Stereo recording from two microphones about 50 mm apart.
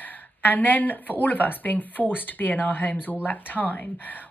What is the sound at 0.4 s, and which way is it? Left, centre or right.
Speech, left.